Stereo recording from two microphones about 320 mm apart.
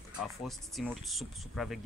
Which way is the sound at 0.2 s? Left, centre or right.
Centre.